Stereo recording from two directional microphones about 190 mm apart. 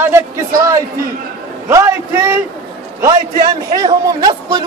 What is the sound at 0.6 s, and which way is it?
A man's voice, 15° right (ahead or behind).